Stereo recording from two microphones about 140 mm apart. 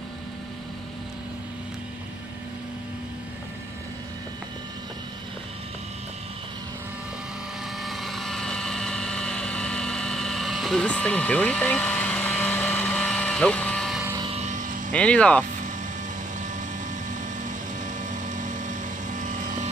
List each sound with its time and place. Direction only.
7.8 s vehicle: centre (ahead or behind)
14.2 s vehicle: 50° right (ahead or behind)
14.9 s speech: 10° left (ahead or behind)
17.1 s vehicle: 65° right (ahead or behind)